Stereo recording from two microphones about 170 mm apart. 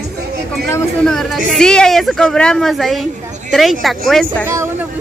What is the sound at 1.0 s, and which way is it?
A woman's voice, centre (ahead or behind).